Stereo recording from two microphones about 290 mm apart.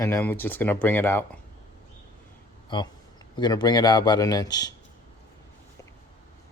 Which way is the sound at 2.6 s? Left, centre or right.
Centre.